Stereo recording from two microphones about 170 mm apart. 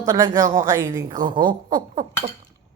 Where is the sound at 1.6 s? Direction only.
45° right (ahead or behind).